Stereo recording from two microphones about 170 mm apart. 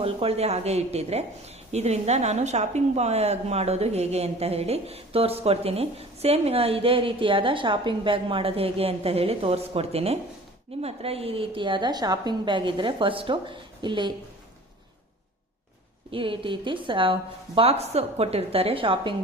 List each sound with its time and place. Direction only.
0.0 s a woman's voice: 35° right (ahead or behind)
16.1 s speech: 30° right (ahead or behind)